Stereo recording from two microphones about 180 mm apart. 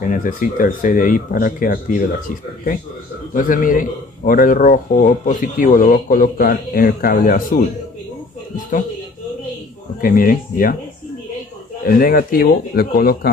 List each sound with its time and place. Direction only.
0.1 s speech: 50° left (ahead or behind)
9.9 s speech: 50° left (ahead or behind)
11.8 s speech: 50° left (ahead or behind)